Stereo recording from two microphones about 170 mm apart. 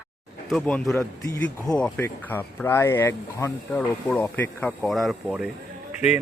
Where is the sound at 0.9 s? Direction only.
20° left (ahead or behind); by 5.4 s centre (ahead or behind).